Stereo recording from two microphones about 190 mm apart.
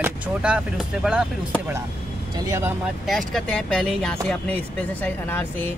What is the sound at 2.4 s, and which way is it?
Speech, 15° right (ahead or behind).